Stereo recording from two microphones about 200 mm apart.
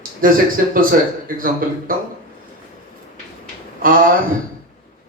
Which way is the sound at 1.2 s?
45° right (ahead or behind).